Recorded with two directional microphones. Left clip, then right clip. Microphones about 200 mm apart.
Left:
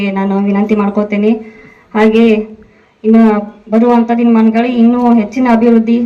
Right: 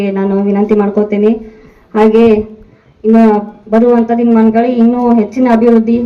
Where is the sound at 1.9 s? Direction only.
25° right (ahead or behind).